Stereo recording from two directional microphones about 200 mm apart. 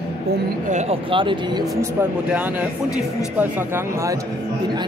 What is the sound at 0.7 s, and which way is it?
A man's voice, 35° right (ahead or behind).